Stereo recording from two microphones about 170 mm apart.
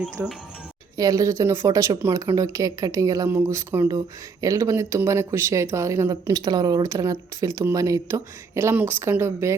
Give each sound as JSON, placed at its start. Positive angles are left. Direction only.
{"t": 0.2, "sound": "speech", "side_deg": -10}